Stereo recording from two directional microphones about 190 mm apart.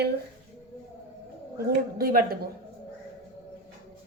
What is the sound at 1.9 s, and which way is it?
Speech, 55° right (ahead or behind).